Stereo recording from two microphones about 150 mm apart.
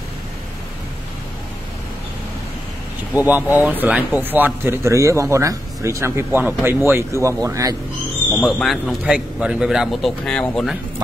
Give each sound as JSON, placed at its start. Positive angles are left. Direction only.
{"t": 3.2, "sound": "speech", "side_deg": -10}
{"t": 8.3, "sound": "a man's voice", "side_deg": 5}